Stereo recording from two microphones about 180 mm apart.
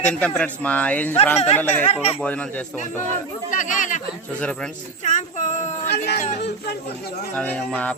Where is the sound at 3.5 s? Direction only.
45° left (ahead or behind).